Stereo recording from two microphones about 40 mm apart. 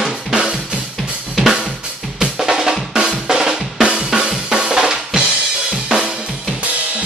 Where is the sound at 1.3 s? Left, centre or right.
Centre.